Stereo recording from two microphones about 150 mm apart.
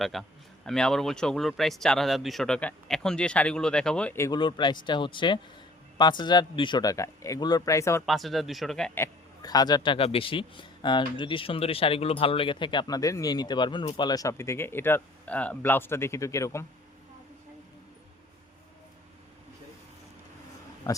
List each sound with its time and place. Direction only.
0.0 s speech: centre (ahead or behind)
4.3 s a man's voice: 30° left (ahead or behind)
8.0 s speech: centre (ahead or behind)
9.0 s a man's voice: 25° left (ahead or behind)